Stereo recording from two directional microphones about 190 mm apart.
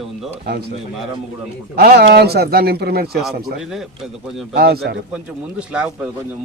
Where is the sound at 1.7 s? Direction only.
60° right (ahead or behind).